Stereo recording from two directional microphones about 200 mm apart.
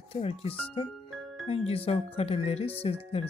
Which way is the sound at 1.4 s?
30° left (ahead or behind).